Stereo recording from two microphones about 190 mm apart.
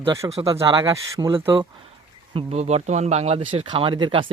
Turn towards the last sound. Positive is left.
turn(degrees=-25)  # may be behind; listen again after turning